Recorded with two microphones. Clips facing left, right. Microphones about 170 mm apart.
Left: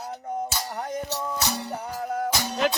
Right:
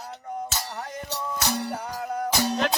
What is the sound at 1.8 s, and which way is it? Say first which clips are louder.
Music: left 1 dB; 5° left (ahead or behind).